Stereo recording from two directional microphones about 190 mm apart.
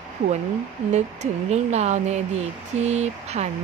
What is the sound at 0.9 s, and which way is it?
Speech, 35° right (ahead or behind).